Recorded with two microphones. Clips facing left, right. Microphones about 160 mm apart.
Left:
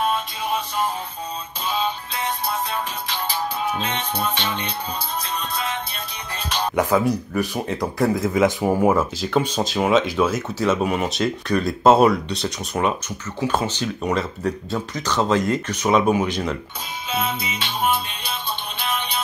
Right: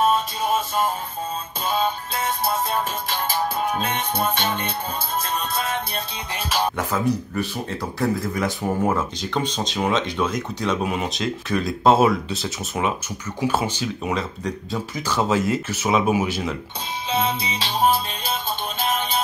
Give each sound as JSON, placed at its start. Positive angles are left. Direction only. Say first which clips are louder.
{"t": 0.0, "sound": "music", "louder": "right 3 dB", "side_deg": -45}
{"t": 6.8, "sound": "speech", "louder": "left 4 dB", "side_deg": 10}
{"t": 8.8, "sound": "speech", "louder": "left 4 dB", "side_deg": 5}
{"t": 17.1, "sound": "music", "louder": "right 2 dB", "side_deg": -30}